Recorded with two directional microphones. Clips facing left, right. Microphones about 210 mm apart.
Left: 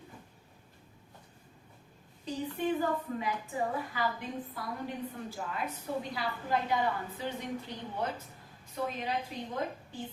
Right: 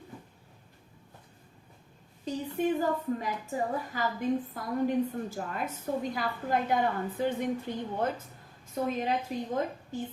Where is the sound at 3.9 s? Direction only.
40° right (ahead or behind).